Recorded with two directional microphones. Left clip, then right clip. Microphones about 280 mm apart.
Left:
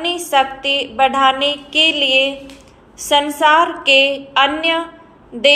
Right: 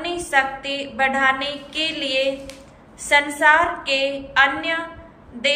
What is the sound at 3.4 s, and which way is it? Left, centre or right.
A woman's voice, centre.